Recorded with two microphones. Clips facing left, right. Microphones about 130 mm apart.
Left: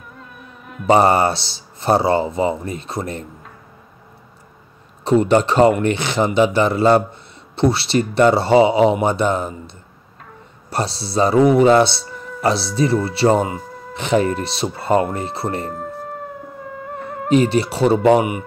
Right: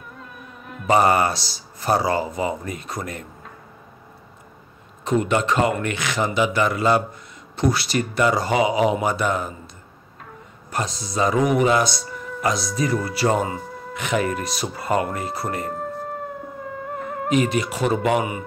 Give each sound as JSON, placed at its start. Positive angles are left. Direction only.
{"t": 0.1, "sound": "insect", "side_deg": 0}
{"t": 0.8, "sound": "speech", "side_deg": 30}
{"t": 5.0, "sound": "speech", "side_deg": 35}
{"t": 10.7, "sound": "a man's voice", "side_deg": 35}
{"t": 15.7, "sound": "music", "side_deg": 0}
{"t": 17.3, "sound": "a man's voice", "side_deg": 35}